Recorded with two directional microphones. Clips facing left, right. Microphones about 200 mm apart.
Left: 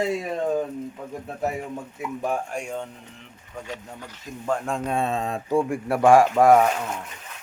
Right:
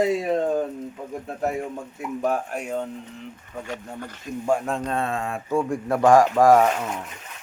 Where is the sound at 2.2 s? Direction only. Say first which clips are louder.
Right 3 dB; 5° right (ahead or behind).